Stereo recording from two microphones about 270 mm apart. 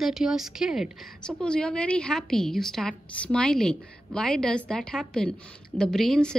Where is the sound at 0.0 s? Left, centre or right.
Centre.